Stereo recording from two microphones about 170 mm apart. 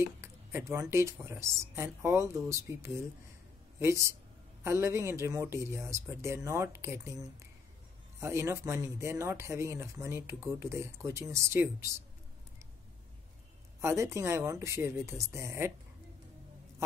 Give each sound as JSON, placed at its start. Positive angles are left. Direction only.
{"t": 0.0, "sound": "speech", "side_deg": -15}
{"t": 13.7, "sound": "speech", "side_deg": -15}